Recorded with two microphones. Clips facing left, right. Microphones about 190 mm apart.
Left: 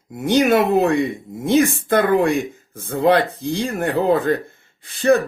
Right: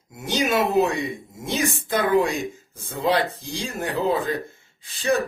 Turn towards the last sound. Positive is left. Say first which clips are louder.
# left 8 dB
turn(degrees=55)  # may be behind; listen again after turning